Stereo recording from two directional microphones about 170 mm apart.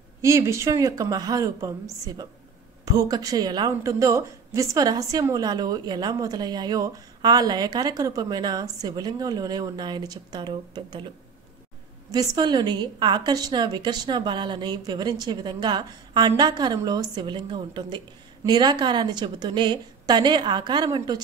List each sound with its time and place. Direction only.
0.2 s a woman's voice: 15° right (ahead or behind)
12.1 s a woman's voice: 20° right (ahead or behind)